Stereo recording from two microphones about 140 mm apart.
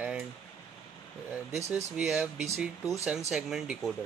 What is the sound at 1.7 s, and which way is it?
Speech, 5° right (ahead or behind).